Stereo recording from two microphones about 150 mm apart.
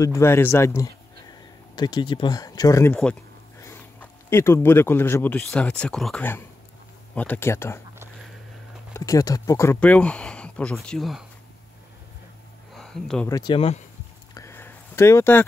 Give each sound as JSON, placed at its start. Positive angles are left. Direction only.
{"t": 0.0, "sound": "speech", "side_deg": 20}
{"t": 2.9, "sound": "speech", "side_deg": 5}
{"t": 8.9, "sound": "speech", "side_deg": 25}
{"t": 9.8, "sound": "speech", "side_deg": 10}
{"t": 12.7, "sound": "a sound", "side_deg": 5}
{"t": 13.3, "sound": "speech", "side_deg": 25}
{"t": 13.6, "sound": "speech", "side_deg": 45}
{"t": 14.3, "sound": "a sound", "side_deg": 15}